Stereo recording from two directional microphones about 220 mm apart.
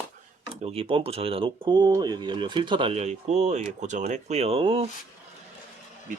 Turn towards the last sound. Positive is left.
turn(degrees=-25)  # may be behind; listen again after turning